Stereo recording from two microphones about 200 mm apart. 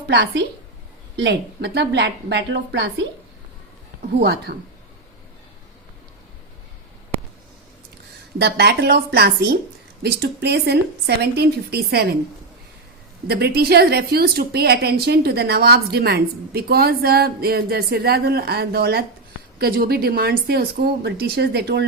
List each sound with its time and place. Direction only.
0.1 s a woman's voice: 55° right (ahead or behind)
4.2 s a woman's voice: 55° right (ahead or behind)
8.4 s a woman's voice: 55° right (ahead or behind)
13.2 s a woman's voice: 50° right (ahead or behind)